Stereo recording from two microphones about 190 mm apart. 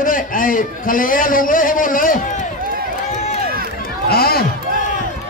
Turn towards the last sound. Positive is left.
turn(degrees=55)  # may be behind; listen again after turning